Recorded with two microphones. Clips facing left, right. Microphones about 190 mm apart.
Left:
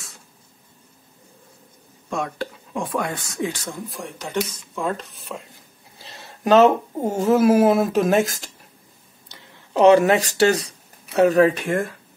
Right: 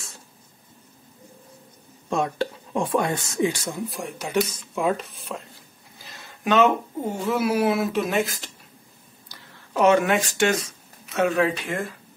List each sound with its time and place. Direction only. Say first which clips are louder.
2.0 s speech: right 2 dB; 25° right (ahead or behind)
3.9 s speech: right 1 dB; 5° right (ahead or behind)
5.9 s speech: left 3 dB; 35° left (ahead or behind)
9.3 s speech: left 4 dB; 25° left (ahead or behind); by 11.8 s 45° left (ahead or behind)